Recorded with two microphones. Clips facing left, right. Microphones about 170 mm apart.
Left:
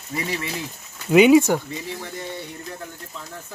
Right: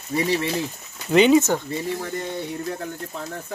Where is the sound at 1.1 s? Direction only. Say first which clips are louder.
Left 2 dB; 10° left (ahead or behind).